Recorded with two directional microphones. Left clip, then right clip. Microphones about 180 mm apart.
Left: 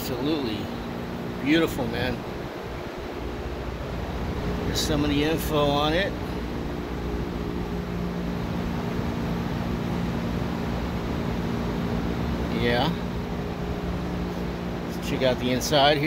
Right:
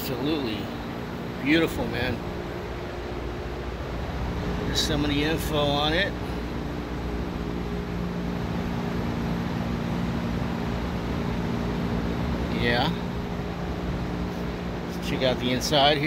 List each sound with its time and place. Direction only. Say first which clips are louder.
0.2 s speech: left 1 dB; centre (ahead or behind)
4.7 s speech: left 1 dB; 15° left (ahead or behind)
12.5 s speech: even; 10° left (ahead or behind)
15.0 s speech: left 1 dB; 5° left (ahead or behind)